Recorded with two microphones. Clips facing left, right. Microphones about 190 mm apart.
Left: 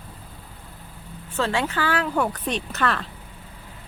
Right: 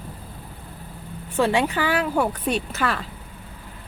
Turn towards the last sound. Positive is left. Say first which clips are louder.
# even
turn(degrees=-5)  # may be behind; listen again after turning